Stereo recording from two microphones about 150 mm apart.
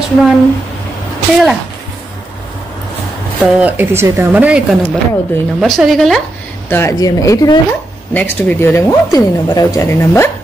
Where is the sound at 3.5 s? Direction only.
10° right (ahead or behind).